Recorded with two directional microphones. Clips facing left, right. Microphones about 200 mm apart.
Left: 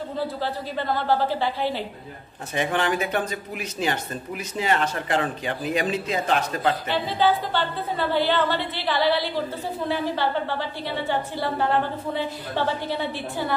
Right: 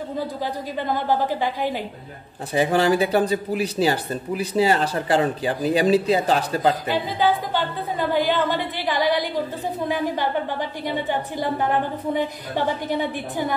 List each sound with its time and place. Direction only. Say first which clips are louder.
0.4 s a woman's voice: right 1 dB; 15° right (ahead or behind)
2.5 s speech: right 5 dB; 35° right (ahead or behind)
6.9 s a woman's voice: right 1 dB; 10° right (ahead or behind)